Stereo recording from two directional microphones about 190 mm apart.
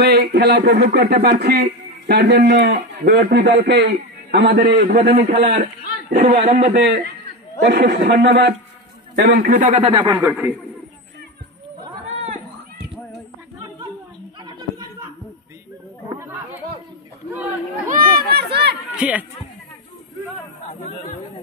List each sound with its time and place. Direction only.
0.0 s a man's voice: 55° right (ahead or behind)
4.7 s speech: 40° right (ahead or behind)
5.0 s a man's voice: 60° right (ahead or behind)
6.1 s speech: 35° right (ahead or behind)
6.7 s a man's voice: 65° right (ahead or behind)
9.5 s speech: 40° right (ahead or behind)
9.8 s speech: 25° right (ahead or behind)
10.4 s a man's voice: 10° right (ahead or behind)
12.0 s a sound: 35° right (ahead or behind)
14.4 s a sound: 20° right (ahead or behind)
17.8 s run: 55° right (ahead or behind)
18.9 s speech: 5° right (ahead or behind)